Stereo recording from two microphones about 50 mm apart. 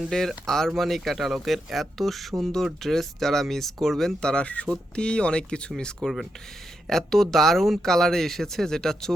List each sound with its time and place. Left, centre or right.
0.0 s speech: centre
6.0 s speech: centre